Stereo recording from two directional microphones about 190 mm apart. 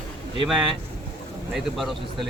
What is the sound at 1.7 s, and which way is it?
Speech, centre (ahead or behind).